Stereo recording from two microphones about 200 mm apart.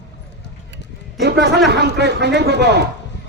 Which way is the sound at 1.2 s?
60° right (ahead or behind).